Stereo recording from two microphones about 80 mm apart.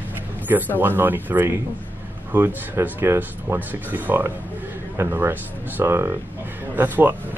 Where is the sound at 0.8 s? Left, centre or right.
Right.